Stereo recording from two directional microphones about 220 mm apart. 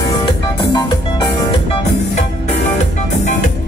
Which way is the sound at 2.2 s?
30° left (ahead or behind).